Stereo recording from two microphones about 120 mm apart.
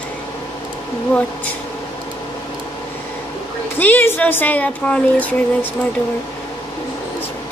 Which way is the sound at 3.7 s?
15° left (ahead or behind).